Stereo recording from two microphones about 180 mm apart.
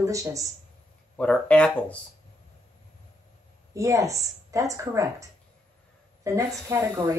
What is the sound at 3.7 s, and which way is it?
A woman's voice, 15° right (ahead or behind).